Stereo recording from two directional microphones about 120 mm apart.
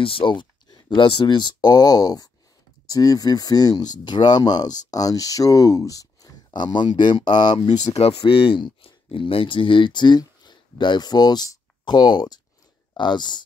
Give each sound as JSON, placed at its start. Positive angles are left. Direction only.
{"t": 0.0, "sound": "speech", "side_deg": 45}
{"t": 8.2, "sound": "speech", "side_deg": 45}